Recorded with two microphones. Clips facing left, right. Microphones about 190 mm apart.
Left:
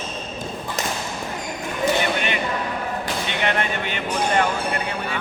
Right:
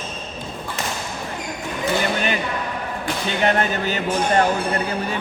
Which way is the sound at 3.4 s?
35° right (ahead or behind).